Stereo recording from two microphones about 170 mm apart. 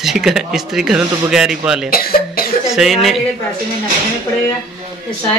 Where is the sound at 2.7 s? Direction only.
Centre (ahead or behind).